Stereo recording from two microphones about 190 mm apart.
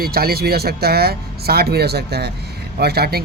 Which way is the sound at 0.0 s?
55° right (ahead or behind).